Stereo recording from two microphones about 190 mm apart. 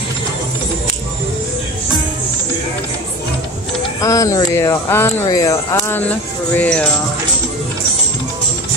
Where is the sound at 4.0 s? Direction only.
15° left (ahead or behind).